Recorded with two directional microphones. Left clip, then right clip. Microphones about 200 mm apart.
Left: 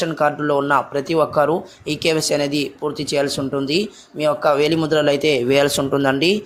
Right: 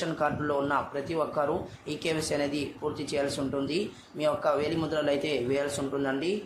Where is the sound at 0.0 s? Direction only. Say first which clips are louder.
Left 10 dB; 35° left (ahead or behind).